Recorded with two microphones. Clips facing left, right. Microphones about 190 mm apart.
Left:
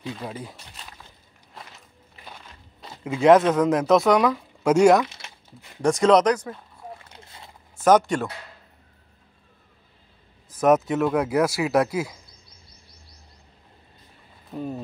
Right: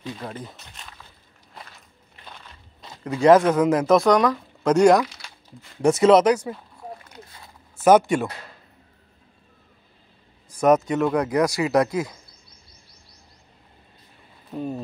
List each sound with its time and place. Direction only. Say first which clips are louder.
0.2 s speech: even; 10° left (ahead or behind)
2.8 s speech: right 1 dB; 5° left (ahead or behind)
5.0 s crumpling: right 1 dB; 20° left (ahead or behind)
5.8 s speech: right 2 dB; 5° right (ahead or behind)
7.1 s boat: right 1 dB; 25° left (ahead or behind)
7.8 s speech: right 2 dB; 10° right (ahead or behind)
10.5 s speech: right 1 dB; centre (ahead or behind)
14.5 s speech: right 2 dB; centre (ahead or behind)